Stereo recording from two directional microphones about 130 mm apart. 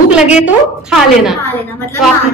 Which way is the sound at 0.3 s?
5° right (ahead or behind).